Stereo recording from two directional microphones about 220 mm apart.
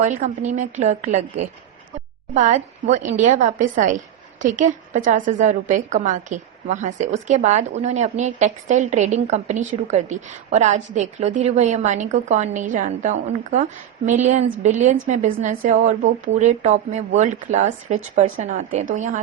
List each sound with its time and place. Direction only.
0.0 s a woman's voice: 35° right (ahead or behind)